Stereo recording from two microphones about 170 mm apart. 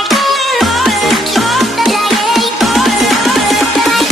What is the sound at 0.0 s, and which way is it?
Music, centre (ahead or behind).